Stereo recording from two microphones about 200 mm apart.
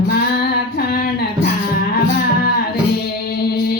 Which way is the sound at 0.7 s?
50° left (ahead or behind).